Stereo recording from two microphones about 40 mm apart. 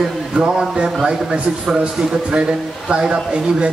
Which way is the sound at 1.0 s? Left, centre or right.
Centre.